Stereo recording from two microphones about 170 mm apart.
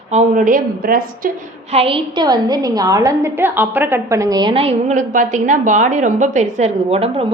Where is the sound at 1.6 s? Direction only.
35° right (ahead or behind).